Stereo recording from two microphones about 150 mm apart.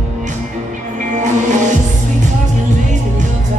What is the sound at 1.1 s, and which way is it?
Music, 55° right (ahead or behind).